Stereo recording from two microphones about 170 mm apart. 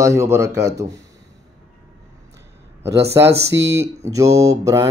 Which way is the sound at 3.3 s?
80° right.